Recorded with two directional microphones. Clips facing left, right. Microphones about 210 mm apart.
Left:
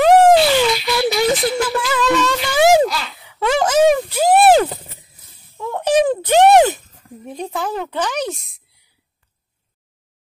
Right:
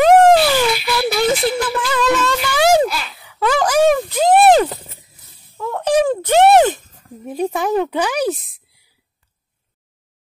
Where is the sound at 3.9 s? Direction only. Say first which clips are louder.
Right 1 dB; 10° left (ahead or behind).